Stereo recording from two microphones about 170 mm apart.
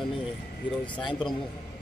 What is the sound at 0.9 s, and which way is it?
Speech, 30° left (ahead or behind).